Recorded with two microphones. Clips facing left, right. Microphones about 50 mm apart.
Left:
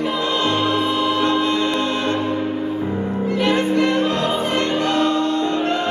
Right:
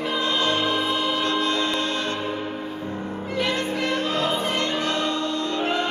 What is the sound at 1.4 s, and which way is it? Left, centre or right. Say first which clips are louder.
Music: left 4 dB; left.